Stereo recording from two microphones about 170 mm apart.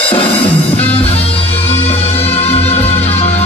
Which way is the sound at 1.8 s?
35° left (ahead or behind).